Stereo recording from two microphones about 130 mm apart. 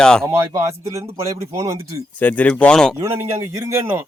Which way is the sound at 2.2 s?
10° left (ahead or behind).